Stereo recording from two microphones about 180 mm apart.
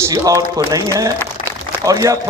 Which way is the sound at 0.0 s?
20° right (ahead or behind).